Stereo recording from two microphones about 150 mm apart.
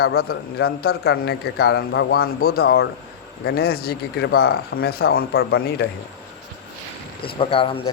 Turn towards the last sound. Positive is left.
turn(degrees=35)  # may be behind; listen again after turning